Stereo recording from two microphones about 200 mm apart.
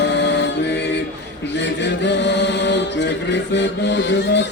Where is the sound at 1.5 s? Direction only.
60° left (ahead or behind).